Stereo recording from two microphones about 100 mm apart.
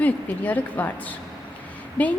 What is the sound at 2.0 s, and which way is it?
Speech, 15° left (ahead or behind).